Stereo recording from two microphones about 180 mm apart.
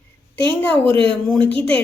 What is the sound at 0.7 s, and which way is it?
Speech, 30° right (ahead or behind).